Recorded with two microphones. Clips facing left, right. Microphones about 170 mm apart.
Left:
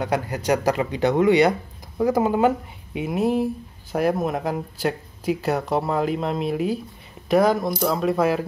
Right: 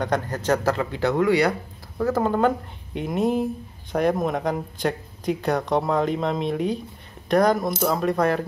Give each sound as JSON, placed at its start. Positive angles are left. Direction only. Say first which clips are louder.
{"t": 0.0, "sound": "speech", "louder": "even", "side_deg": 10}